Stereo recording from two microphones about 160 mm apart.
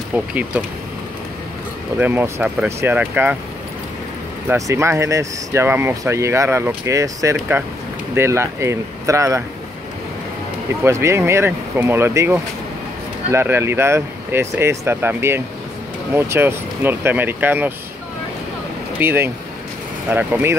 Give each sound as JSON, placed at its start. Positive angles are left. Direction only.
{"t": 0.1, "sound": "speech", "side_deg": -5}
{"t": 2.0, "sound": "speech", "side_deg": -10}
{"t": 4.5, "sound": "speech", "side_deg": -20}
{"t": 10.7, "sound": "speech", "side_deg": -15}
{"t": 18.9, "sound": "speech", "side_deg": -15}